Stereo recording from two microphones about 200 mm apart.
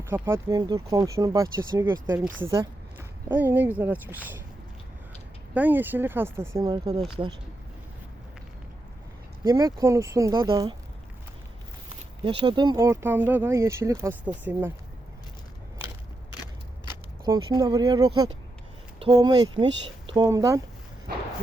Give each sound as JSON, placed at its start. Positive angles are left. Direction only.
{"t": 0.1, "sound": "speech", "side_deg": -15}
{"t": 5.5, "sound": "speech", "side_deg": -10}
{"t": 9.4, "sound": "speech", "side_deg": -15}
{"t": 12.2, "sound": "speech", "side_deg": -25}
{"t": 16.4, "sound": "scissors", "side_deg": 20}
{"t": 17.2, "sound": "speech", "side_deg": -20}
{"t": 21.1, "sound": "a sound", "side_deg": -50}